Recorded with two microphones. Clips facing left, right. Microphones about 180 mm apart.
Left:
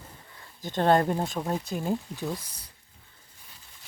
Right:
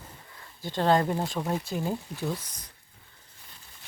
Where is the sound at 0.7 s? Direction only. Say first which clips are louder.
Left 1 dB; 50° left (ahead or behind).